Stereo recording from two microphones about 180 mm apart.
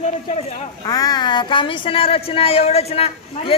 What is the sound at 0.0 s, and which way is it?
Speech, 35° left (ahead or behind).